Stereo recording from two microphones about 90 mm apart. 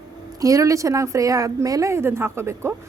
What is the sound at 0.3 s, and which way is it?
A woman's voice, 40° right (ahead or behind).